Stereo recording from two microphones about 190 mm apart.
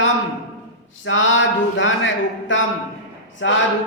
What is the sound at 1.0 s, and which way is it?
Speech, 85° left.